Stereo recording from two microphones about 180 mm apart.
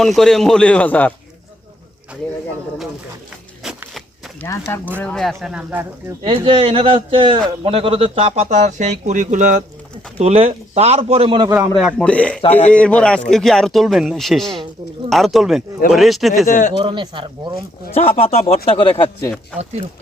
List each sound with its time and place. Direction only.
0.0 s speech: centre (ahead or behind)
3.6 s a sound: 5° right (ahead or behind)
4.9 s speech: 5° left (ahead or behind)
6.2 s a man's voice: 30° right (ahead or behind)
11.8 s speech: centre (ahead or behind)
12.4 s speech: 35° left (ahead or behind)
12.7 s a man's voice: 5° left (ahead or behind)
16.5 s speech: 45° left (ahead or behind)
16.7 s a man's voice: 25° right (ahead or behind)
18.2 s speech: 35° left (ahead or behind)